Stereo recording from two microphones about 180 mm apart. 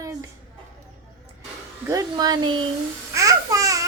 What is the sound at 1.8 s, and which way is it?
Speech, 20° right (ahead or behind).